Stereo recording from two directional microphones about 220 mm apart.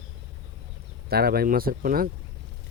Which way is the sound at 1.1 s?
45° right (ahead or behind).